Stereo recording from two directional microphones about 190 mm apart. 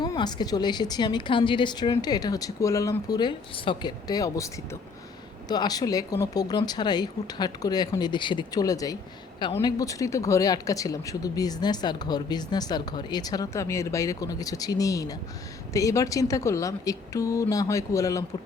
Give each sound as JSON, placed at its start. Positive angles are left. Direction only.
{"t": 0.0, "sound": "speech", "side_deg": 20}